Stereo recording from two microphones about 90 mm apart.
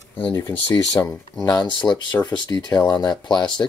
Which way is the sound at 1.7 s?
60° left (ahead or behind).